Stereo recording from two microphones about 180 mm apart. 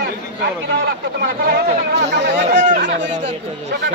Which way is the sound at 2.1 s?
75° right (ahead or behind).